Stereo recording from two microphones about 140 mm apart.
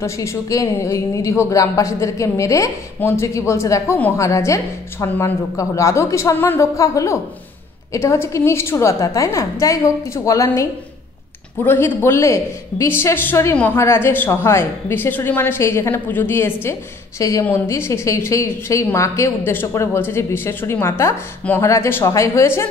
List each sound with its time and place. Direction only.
0.0 s a woman's voice: 20° left (ahead or behind)